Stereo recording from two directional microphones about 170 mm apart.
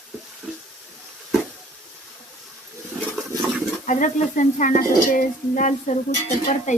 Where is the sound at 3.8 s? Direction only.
50° left (ahead or behind).